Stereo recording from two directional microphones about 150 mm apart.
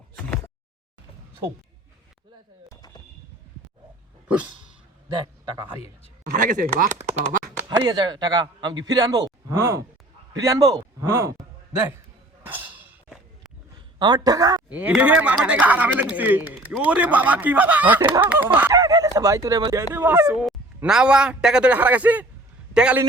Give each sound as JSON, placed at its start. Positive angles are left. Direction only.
{"t": 2.6, "sound": "a sound", "side_deg": 25}
{"t": 5.0, "sound": "a man's voice", "side_deg": -30}
{"t": 6.3, "sound": "speech", "side_deg": -65}
{"t": 7.8, "sound": "a man's voice", "side_deg": -25}
{"t": 14.0, "sound": "a man's voice", "side_deg": -25}
{"t": 14.7, "sound": "speech", "side_deg": -10}
{"t": 19.9, "sound": "speech", "side_deg": -15}